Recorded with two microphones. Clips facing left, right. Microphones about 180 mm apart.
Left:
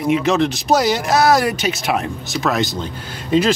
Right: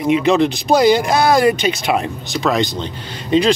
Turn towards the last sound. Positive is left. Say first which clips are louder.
# right 1 dB
turn(degrees=5)  # may be behind; listen again after turning